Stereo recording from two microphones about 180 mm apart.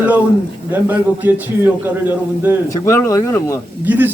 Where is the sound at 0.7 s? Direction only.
10° right (ahead or behind).